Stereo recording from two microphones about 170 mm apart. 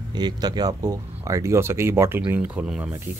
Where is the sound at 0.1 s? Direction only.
25° right (ahead or behind).